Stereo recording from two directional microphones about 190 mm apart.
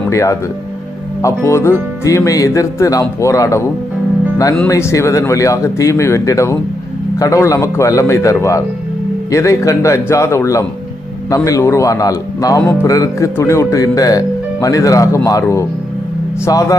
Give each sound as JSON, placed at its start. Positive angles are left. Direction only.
{"t": 0.1, "sound": "speech", "side_deg": 15}